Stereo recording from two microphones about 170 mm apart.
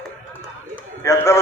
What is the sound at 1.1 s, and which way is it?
Speech, 20° left (ahead or behind).